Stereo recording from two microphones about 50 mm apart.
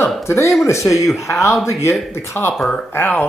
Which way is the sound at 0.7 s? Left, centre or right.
Left.